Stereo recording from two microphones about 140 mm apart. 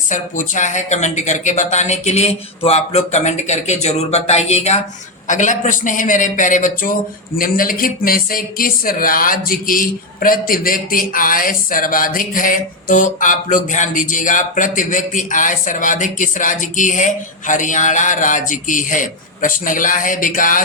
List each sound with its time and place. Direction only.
0.1 s speech: 65° left (ahead or behind)
5.3 s speech: 65° left (ahead or behind)
7.3 s speech: 90° left; by 20.6 s 75° left (ahead or behind)